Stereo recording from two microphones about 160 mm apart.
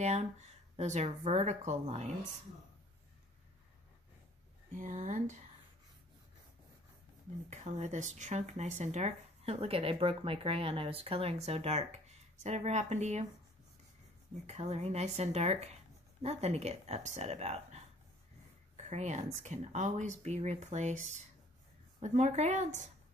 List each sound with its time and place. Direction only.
0.0 s speech: 45° right (ahead or behind)
4.7 s speech: 55° right (ahead or behind)
7.4 s speech: 45° right (ahead or behind)
14.4 s speech: 40° right (ahead or behind)
22.0 s speech: 45° right (ahead or behind)